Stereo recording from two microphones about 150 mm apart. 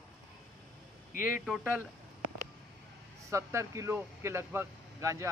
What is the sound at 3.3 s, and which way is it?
Speech, 20° right (ahead or behind).